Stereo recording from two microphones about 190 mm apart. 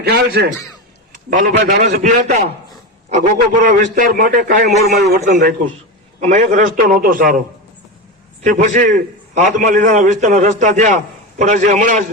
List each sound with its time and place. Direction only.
0.0 s a man's voice: 55° right (ahead or behind)
1.3 s a man's voice: 45° right (ahead or behind); by 5.5 s 60° right (ahead or behind)
6.1 s a man's voice: 35° right (ahead or behind)
8.4 s a man's voice: 40° right (ahead or behind)